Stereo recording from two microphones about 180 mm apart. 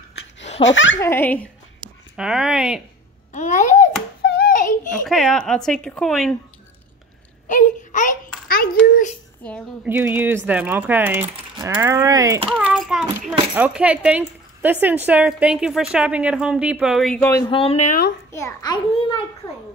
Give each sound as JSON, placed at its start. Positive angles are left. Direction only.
{"t": 0.6, "sound": "speech", "side_deg": 90}
{"t": 0.9, "sound": "a child's voice", "side_deg": 10}
{"t": 1.8, "sound": "a sound", "side_deg": -25}
{"t": 2.1, "sound": "speech", "side_deg": -5}
{"t": 3.3, "sound": "a child's voice", "side_deg": 45}
{"t": 4.2, "sound": "hands", "side_deg": 60}
{"t": 5.0, "sound": "speech", "side_deg": 0}
{"t": 7.4, "sound": "babbling", "side_deg": 45}
{"t": 9.8, "sound": "speech", "side_deg": -10}
{"t": 12.4, "sound": "a child's voice", "side_deg": -5}
{"t": 17.5, "sound": "speech", "side_deg": 30}
{"t": 18.3, "sound": "a child's voice", "side_deg": 20}